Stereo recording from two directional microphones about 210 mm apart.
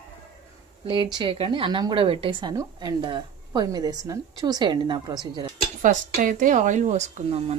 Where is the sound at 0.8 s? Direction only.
20° right (ahead or behind).